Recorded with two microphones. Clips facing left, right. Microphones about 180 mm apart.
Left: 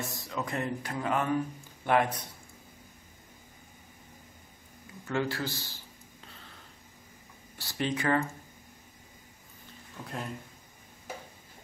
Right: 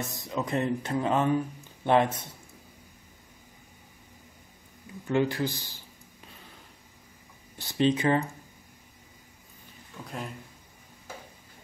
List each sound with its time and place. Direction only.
0.3 s speech: 20° right (ahead or behind)
5.0 s a sound: 20° right (ahead or behind)
7.5 s speech: 20° right (ahead or behind)
10.0 s speech: centre (ahead or behind)